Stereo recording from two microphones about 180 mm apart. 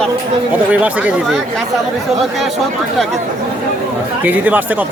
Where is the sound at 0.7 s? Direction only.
10° right (ahead or behind).